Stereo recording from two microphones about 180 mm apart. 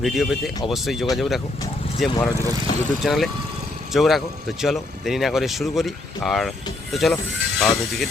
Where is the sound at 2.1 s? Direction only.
20° left (ahead or behind).